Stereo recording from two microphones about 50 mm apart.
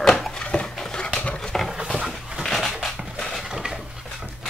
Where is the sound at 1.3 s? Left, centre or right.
Centre.